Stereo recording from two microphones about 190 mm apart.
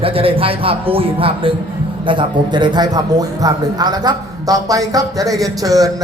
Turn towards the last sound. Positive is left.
turn(degrees=-20)  # may be behind; listen again after turning